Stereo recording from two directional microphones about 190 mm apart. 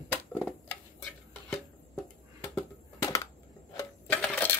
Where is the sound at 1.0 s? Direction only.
10° left (ahead or behind).